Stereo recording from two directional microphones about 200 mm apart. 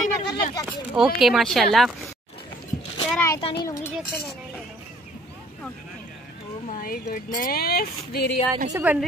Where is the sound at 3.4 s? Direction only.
25° left (ahead or behind).